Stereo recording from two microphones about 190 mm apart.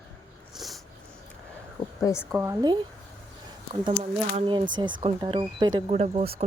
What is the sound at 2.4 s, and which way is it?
Speech, 20° right (ahead or behind).